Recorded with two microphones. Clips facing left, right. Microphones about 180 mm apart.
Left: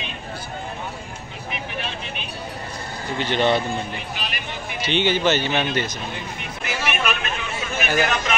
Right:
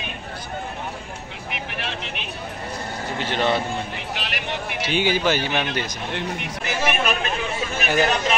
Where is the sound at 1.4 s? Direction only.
75° right (ahead or behind).